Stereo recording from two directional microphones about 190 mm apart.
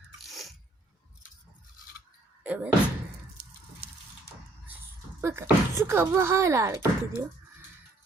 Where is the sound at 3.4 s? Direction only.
55° right (ahead or behind).